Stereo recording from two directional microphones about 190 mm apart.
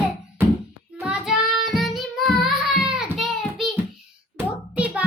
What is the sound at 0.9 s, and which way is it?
Child singing, 5° right (ahead or behind).